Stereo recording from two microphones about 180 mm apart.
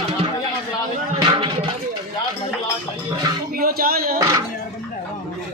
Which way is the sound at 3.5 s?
55° right (ahead or behind).